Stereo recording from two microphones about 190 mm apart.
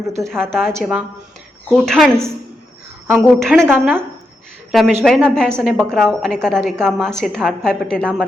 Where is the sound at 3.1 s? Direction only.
Centre (ahead or behind).